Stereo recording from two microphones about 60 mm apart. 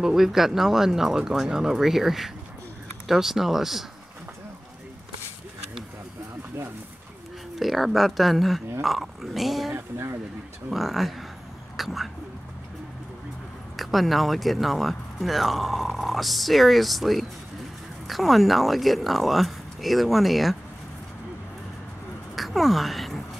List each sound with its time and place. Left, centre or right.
0.0 s speech: centre
7.5 s speech: centre
9.8 s speech: right
10.7 s speech: centre
11.7 s a sound: centre
13.7 s speech: centre
22.3 s a sound: centre